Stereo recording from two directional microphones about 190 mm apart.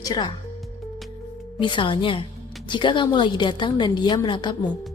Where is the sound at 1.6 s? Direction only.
25° left (ahead or behind).